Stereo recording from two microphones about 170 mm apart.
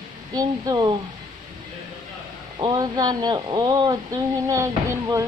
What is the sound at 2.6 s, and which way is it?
Speech, 20° right (ahead or behind).